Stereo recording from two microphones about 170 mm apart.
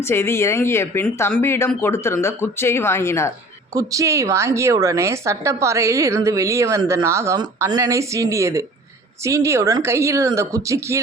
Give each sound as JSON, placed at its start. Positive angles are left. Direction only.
{"t": 0.0, "sound": "speech", "side_deg": 15}
{"t": 3.8, "sound": "a woman's voice", "side_deg": -20}